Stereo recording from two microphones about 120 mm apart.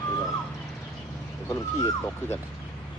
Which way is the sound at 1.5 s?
25° left (ahead or behind).